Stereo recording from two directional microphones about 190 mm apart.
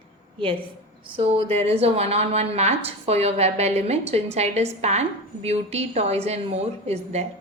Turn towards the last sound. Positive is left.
turn(degrees=-35)  # may be behind; listen again after turning